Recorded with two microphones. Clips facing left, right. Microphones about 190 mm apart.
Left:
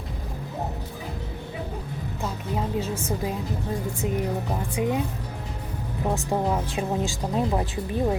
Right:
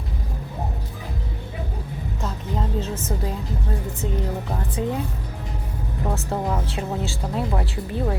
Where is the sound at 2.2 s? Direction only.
10° left (ahead or behind).